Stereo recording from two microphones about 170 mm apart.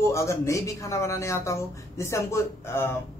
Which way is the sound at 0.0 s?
15° left (ahead or behind).